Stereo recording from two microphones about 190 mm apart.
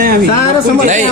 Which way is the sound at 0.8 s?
40° right (ahead or behind).